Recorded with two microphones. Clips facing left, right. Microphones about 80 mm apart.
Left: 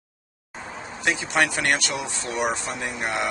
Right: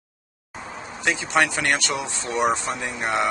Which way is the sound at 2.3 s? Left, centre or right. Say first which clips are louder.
Right 4 dB; right.